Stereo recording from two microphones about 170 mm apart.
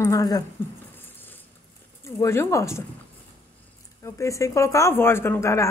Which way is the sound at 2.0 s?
15° left (ahead or behind).